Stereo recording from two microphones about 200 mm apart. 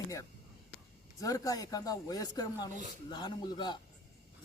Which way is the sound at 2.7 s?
40° right (ahead or behind).